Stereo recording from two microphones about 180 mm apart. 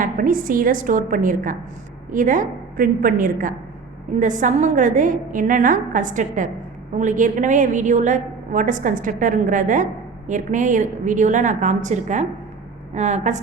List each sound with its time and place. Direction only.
0.0 s a woman's voice: 50° right (ahead or behind)